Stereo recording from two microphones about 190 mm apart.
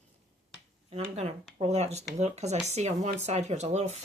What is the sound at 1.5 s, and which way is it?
A woman's voice, 35° right (ahead or behind).